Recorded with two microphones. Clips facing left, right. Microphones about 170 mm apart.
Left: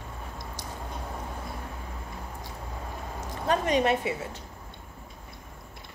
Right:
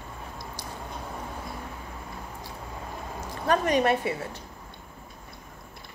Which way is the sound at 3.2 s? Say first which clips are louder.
Right 2 dB; 20° left (ahead or behind).